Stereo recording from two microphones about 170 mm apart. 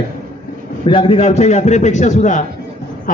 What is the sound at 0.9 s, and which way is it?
A man's voice, 30° left (ahead or behind).